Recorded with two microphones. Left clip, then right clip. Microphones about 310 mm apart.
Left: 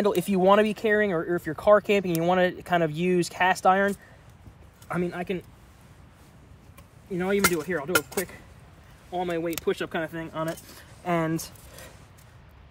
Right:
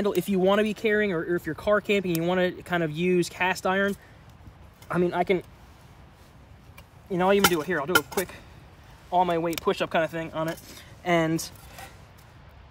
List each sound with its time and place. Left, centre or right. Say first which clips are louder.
0.0 s speech: left 2 dB; centre
4.8 s speech: right 6 dB; centre
7.1 s speech: right 3 dB; centre
9.1 s speech: right 5 dB; centre